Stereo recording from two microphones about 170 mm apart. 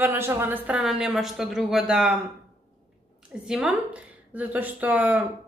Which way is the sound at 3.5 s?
5° right (ahead or behind).